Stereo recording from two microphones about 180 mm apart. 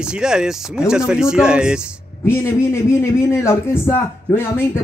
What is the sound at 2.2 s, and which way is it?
A man's voice, 15° left (ahead or behind).